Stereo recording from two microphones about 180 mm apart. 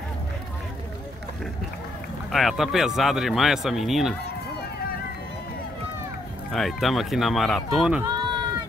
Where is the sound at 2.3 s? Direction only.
Centre (ahead or behind).